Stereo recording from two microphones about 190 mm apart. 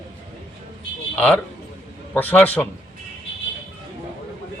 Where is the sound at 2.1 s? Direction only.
10° left (ahead or behind).